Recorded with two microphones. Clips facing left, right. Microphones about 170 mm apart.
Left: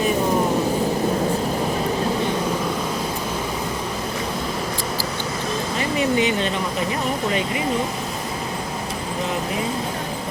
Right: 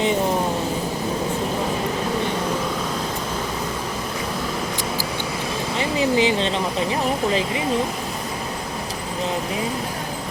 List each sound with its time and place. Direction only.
5.7 s vehicle: 25° right (ahead or behind)